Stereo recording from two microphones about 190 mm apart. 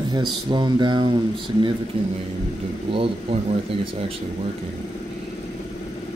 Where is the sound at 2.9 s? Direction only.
30° right (ahead or behind).